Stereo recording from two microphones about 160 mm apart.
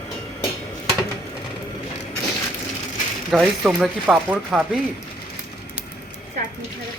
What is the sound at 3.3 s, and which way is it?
Speech, centre (ahead or behind).